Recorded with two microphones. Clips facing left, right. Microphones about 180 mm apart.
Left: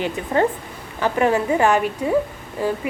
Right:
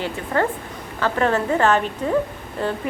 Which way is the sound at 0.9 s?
15° left (ahead or behind).